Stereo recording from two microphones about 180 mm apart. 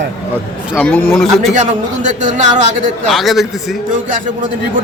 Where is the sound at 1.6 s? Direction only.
40° right (ahead or behind).